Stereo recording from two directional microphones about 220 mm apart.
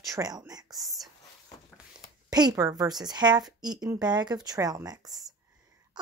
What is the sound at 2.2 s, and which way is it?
A child's voice, 15° right (ahead or behind).